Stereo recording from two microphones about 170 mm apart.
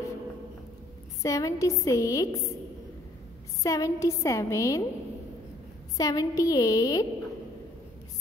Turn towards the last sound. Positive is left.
turn(degrees=20)  # may be behind; listen again after turning